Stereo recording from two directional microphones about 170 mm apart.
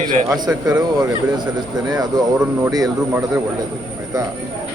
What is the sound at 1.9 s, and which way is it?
A man's voice, 25° right (ahead or behind).